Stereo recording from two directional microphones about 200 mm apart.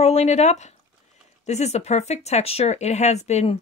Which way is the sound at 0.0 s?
35° left (ahead or behind).